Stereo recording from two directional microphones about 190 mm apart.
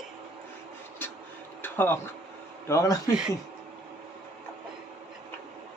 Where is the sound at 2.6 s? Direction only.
15° left (ahead or behind).